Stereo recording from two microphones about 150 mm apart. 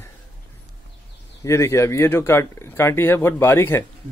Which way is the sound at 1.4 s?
20° left (ahead or behind).